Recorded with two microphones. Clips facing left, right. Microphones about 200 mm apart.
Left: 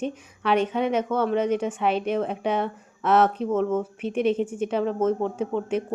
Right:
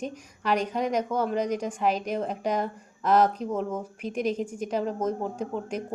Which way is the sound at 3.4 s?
15° right (ahead or behind).